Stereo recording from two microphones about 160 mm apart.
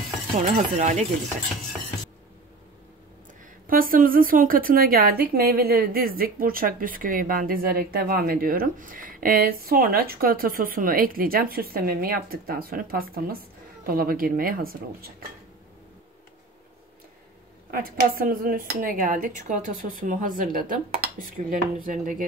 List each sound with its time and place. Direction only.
0.7 s chopping: 45° right (ahead or behind)
3.6 s a woman's voice: 60° right (ahead or behind)
17.6 s a woman's voice: 65° right (ahead or behind)